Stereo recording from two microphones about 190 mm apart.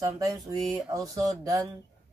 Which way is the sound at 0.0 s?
15° right (ahead or behind).